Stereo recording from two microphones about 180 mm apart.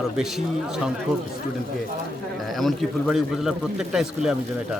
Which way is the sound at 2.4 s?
Centre (ahead or behind).